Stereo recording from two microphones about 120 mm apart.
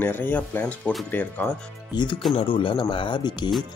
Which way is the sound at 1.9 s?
40° left (ahead or behind).